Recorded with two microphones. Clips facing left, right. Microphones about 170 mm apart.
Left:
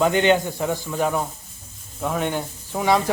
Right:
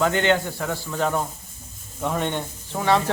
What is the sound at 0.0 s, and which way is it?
Speech, 15° left (ahead or behind).